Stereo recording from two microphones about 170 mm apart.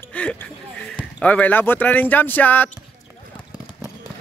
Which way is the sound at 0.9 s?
10° left (ahead or behind).